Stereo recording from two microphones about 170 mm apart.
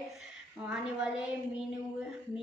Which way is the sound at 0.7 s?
5° right (ahead or behind).